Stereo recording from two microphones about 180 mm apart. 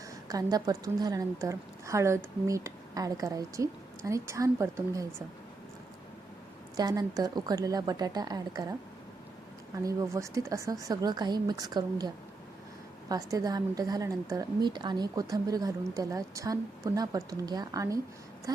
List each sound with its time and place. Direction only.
0.3 s a woman's voice: 20° right (ahead or behind)
6.7 s a woman's voice: 20° right (ahead or behind)
9.8 s a woman's voice: 15° right (ahead or behind)